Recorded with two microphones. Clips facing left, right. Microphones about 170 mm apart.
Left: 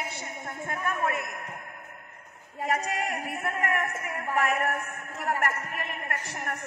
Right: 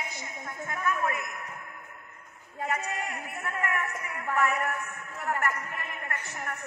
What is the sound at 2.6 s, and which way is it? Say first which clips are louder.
A woman's voice: left 4 dB; 40° left (ahead or behind).